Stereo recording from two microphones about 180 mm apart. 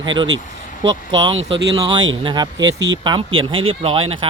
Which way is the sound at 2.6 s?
90° right.